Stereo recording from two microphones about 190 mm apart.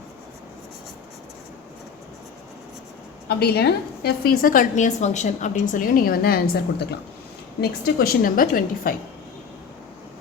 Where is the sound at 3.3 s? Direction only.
55° left (ahead or behind).